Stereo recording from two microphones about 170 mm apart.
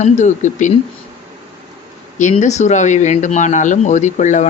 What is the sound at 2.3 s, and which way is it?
Speech, 40° left (ahead or behind).